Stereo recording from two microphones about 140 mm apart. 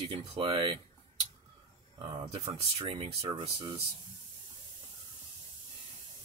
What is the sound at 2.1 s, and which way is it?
Speech, 40° right (ahead or behind).